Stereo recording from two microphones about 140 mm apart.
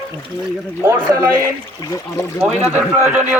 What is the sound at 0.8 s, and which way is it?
Speech, 20° right (ahead or behind).